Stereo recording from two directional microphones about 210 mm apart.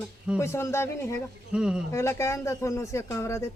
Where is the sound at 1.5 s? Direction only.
5° right (ahead or behind).